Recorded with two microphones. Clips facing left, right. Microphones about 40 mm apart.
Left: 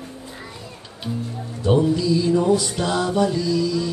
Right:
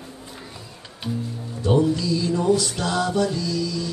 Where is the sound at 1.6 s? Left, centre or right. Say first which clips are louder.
Left 2 dB; centre.